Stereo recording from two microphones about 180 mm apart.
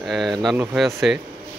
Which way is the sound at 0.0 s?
Centre (ahead or behind).